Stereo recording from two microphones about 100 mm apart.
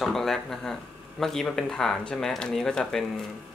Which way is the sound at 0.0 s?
5° left (ahead or behind).